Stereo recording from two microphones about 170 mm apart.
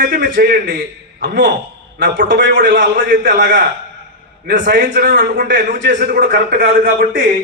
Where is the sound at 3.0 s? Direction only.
50° right (ahead or behind).